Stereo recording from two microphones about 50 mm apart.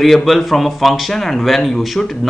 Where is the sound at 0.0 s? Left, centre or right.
Centre.